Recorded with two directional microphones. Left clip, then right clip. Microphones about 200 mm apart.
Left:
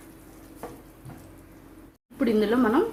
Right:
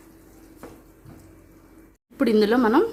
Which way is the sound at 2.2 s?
45° right (ahead or behind).